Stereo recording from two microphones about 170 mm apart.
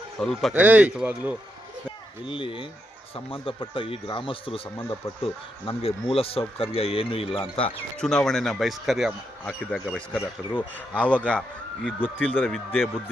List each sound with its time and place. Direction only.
0.2 s speech: centre (ahead or behind)
0.5 s speech: 10° right (ahead or behind)
2.2 s speech: 30° left (ahead or behind)
7.9 s speech: 5° left (ahead or behind)